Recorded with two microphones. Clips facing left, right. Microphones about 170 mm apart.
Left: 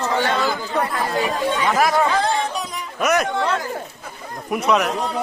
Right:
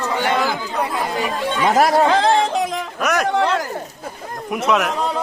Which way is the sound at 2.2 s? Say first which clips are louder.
Right 6 dB; 90° right.